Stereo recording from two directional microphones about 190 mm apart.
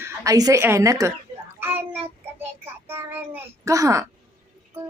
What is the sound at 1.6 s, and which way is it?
Child singing, 10° right (ahead or behind).